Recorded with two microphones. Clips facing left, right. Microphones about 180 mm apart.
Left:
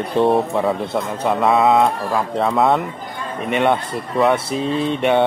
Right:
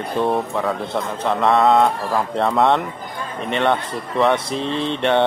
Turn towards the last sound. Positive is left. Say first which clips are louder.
# left 2 dB
turn(degrees=10)  # may be behind; listen again after turning